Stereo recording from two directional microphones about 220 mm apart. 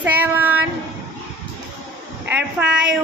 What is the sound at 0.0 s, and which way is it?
Child singing, 10° right (ahead or behind).